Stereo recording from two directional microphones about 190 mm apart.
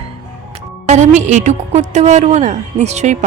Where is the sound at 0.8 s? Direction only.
40° right (ahead or behind).